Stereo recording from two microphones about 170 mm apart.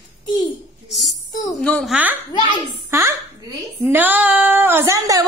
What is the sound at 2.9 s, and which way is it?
Speech, 15° right (ahead or behind).